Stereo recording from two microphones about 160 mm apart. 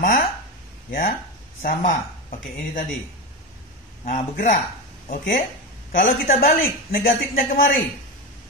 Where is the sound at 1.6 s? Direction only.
55° left (ahead or behind).